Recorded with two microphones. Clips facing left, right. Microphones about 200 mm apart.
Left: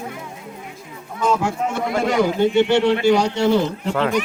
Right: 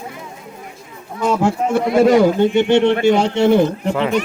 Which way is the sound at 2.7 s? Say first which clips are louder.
Right 3 dB; 20° right (ahead or behind).